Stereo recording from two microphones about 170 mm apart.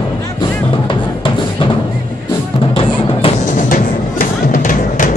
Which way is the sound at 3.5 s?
55° left (ahead or behind).